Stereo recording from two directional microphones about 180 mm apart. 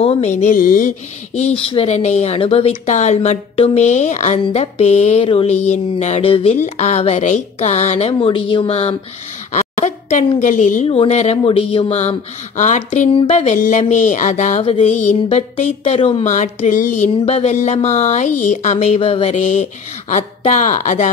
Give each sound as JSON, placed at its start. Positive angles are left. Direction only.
{"t": 0.0, "sound": "speech", "side_deg": 35}
{"t": 16.3, "sound": "speech", "side_deg": 45}